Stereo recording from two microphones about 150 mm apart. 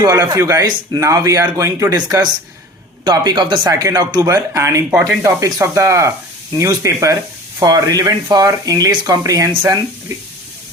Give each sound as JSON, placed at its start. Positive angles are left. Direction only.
{"t": 0.0, "sound": "speech", "side_deg": -25}
{"t": 4.9, "sound": "speech", "side_deg": -10}
{"t": 5.2, "sound": "speech", "side_deg": -20}